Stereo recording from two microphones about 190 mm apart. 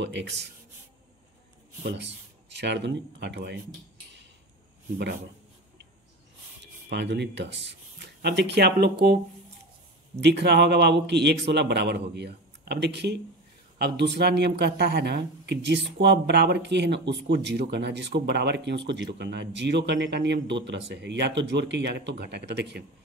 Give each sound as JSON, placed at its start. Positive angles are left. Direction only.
{"t": 0.0, "sound": "speech", "side_deg": -65}
{"t": 1.9, "sound": "speech", "side_deg": -65}
{"t": 6.6, "sound": "speech", "side_deg": -65}
{"t": 10.2, "sound": "speech", "side_deg": -65}